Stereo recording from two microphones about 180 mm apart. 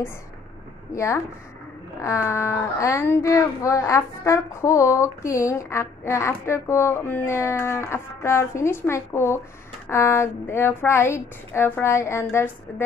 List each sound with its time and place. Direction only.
0.9 s speech: 15° left (ahead or behind)